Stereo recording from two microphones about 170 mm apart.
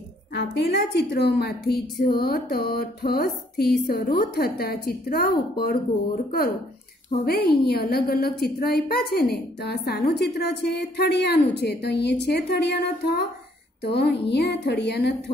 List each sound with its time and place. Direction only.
0.3 s a woman's voice: 85° left; by 5.8 s 60° left (ahead or behind)
7.1 s a woman's voice: 65° left (ahead or behind)
13.8 s a woman's voice: 75° left (ahead or behind)